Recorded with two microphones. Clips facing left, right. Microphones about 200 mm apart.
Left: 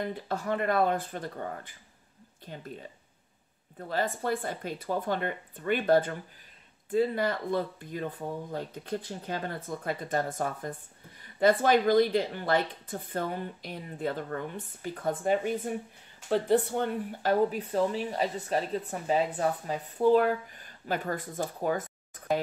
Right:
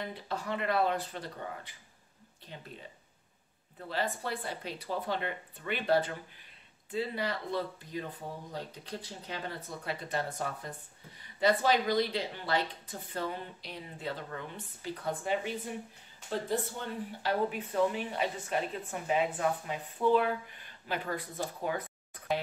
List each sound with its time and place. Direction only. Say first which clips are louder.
0.0 s speech: left 5 dB; 45° left (ahead or behind)
3.9 s speech: left 5 dB; 50° left (ahead or behind)
16.3 s speech: left 8 dB; 70° left (ahead or behind)
17.2 s speech: left 6 dB; 40° left (ahead or behind)